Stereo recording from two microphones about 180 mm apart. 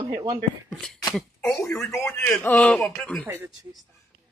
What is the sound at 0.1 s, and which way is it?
Speech, 25° right (ahead or behind).